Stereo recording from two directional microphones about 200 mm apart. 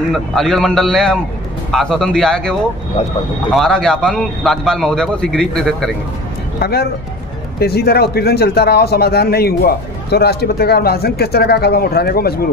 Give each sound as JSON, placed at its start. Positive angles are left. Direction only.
{"t": 0.1, "sound": "a man's voice", "side_deg": 0}
{"t": 3.5, "sound": "a man's voice", "side_deg": 5}
{"t": 6.6, "sound": "speech", "side_deg": 50}